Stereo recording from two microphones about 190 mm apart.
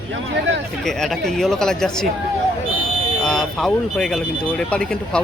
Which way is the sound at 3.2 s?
5° left (ahead or behind).